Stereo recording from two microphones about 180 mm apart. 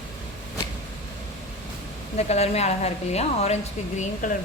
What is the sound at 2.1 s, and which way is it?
A woman's voice, 35° left (ahead or behind).